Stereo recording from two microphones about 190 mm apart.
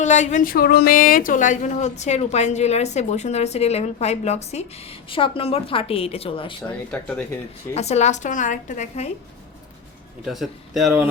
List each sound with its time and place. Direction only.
0.0 s a woman's voice: 40° left (ahead or behind)
6.9 s speech: 10° left (ahead or behind)
7.7 s speech: 35° left (ahead or behind)
10.2 s speech: centre (ahead or behind)